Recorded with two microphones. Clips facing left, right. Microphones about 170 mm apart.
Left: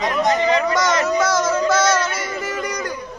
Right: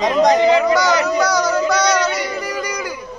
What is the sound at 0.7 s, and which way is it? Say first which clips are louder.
Child singing: right 3 dB; centre (ahead or behind).